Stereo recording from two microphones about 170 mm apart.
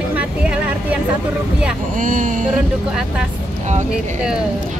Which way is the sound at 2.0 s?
50° right (ahead or behind).